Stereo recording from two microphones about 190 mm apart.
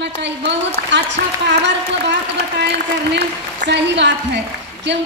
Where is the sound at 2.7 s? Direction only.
65° right (ahead or behind).